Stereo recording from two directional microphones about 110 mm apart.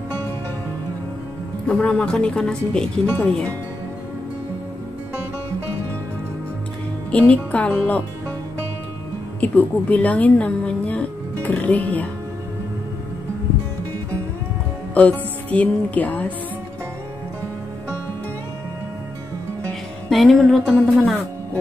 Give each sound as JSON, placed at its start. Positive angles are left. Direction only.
{"t": 1.7, "sound": "speech", "side_deg": 10}
{"t": 3.1, "sound": "speech", "side_deg": 20}
{"t": 7.1, "sound": "speech", "side_deg": 10}
{"t": 9.4, "sound": "a woman's voice", "side_deg": 15}
{"t": 15.0, "sound": "music", "side_deg": 10}
{"t": 20.1, "sound": "music", "side_deg": 0}